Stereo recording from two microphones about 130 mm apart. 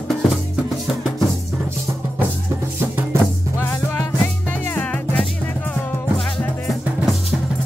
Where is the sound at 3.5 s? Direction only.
20° left (ahead or behind); by 7.1 s centre (ahead or behind).